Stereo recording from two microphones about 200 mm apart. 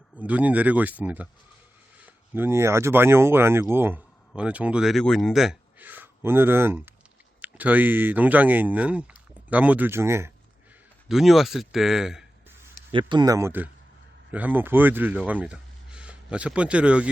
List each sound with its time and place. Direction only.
0.2 s speech: 5° right (ahead or behind)
11.1 s speech: centre (ahead or behind)
12.9 s speech: 25° right (ahead or behind); by 17.1 s 5° right (ahead or behind)